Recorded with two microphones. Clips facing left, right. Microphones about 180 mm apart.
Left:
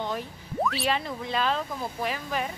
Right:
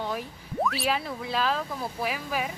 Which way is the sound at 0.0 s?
5° right (ahead or behind).